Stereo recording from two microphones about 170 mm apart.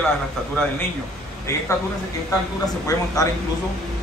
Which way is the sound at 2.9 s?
20° left (ahead or behind).